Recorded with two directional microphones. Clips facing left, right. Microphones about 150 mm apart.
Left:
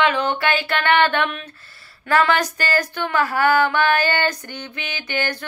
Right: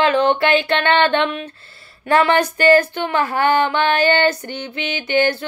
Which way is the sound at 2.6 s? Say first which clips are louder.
Right 9 dB; 20° right (ahead or behind).